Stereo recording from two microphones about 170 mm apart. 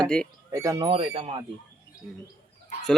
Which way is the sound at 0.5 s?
20° right (ahead or behind).